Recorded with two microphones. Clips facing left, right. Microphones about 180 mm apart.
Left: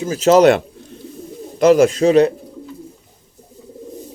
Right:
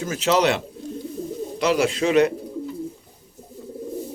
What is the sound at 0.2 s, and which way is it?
Speech, 45° left (ahead or behind).